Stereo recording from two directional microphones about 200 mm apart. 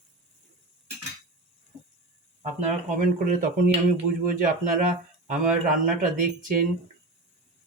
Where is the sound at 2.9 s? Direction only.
40° right (ahead or behind).